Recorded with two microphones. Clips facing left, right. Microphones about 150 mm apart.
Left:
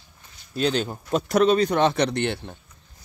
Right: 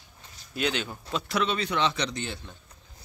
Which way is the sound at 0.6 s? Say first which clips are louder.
Left 6 dB; 40° left (ahead or behind).